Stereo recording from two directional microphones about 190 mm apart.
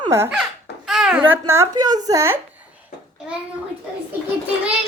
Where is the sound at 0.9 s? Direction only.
5° right (ahead or behind).